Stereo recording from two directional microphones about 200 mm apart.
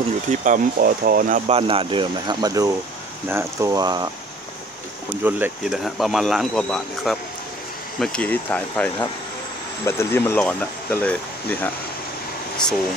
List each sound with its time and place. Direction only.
0.3 s speech: 40° right (ahead or behind)
1.5 s speech: 25° right (ahead or behind)
5.2 s speech: 5° right (ahead or behind)